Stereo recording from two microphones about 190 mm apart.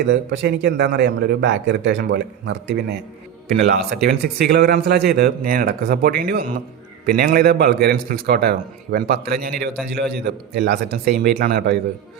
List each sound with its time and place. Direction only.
0.1 s a man's voice: 65° right (ahead or behind)